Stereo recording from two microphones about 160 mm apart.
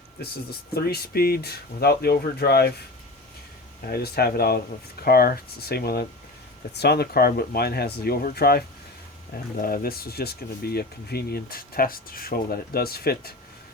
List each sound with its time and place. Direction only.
0.2 s speech: 75° left (ahead or behind)
3.8 s speech: 70° left (ahead or behind)